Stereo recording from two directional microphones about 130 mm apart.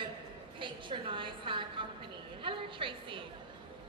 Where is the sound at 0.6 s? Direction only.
40° right (ahead or behind).